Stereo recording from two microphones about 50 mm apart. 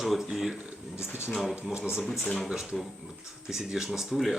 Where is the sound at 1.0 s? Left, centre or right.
Left.